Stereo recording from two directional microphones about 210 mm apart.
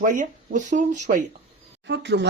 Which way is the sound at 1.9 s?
55° right (ahead or behind).